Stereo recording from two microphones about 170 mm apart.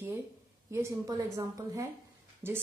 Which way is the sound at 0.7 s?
15° right (ahead or behind).